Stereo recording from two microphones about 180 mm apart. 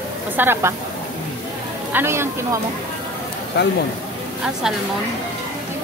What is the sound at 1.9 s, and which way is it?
Speech, 15° right (ahead or behind).